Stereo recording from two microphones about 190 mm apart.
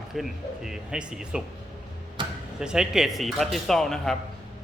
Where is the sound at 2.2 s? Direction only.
25° right (ahead or behind).